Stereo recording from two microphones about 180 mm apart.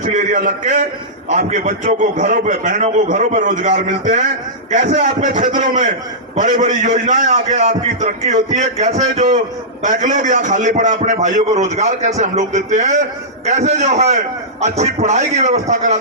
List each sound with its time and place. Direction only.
0.0 s a man's voice: 40° right (ahead or behind)